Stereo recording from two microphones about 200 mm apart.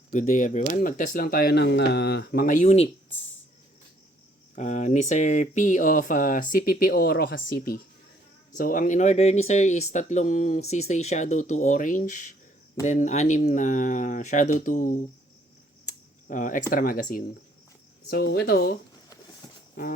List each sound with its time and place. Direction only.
0.1 s speech: 40° left (ahead or behind)
4.5 s speech: 40° left (ahead or behind)
18.1 s speech: 55° left (ahead or behind)